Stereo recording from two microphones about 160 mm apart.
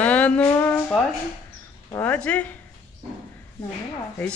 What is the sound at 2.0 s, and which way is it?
Speech, 10° left (ahead or behind).